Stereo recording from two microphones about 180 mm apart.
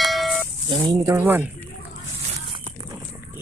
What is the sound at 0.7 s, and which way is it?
Speech, 20° right (ahead or behind).